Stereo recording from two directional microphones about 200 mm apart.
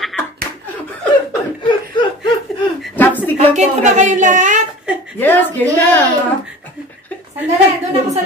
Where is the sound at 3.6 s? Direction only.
35° right (ahead or behind).